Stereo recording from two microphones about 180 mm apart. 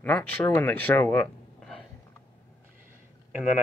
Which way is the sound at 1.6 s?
Centre (ahead or behind).